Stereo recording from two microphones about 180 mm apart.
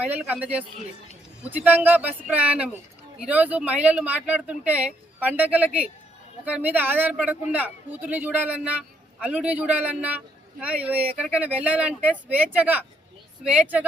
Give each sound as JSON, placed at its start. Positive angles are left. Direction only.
{"t": 0.0, "sound": "speech", "side_deg": -10}